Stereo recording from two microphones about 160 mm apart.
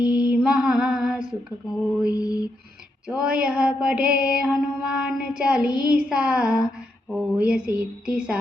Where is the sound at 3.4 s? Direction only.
5° right (ahead or behind).